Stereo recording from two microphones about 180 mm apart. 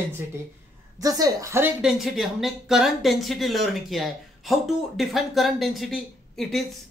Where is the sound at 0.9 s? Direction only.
20° right (ahead or behind).